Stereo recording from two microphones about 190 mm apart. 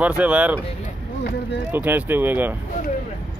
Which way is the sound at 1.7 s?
10° right (ahead or behind).